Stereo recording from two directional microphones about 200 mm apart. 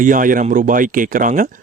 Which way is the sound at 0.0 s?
40° right (ahead or behind).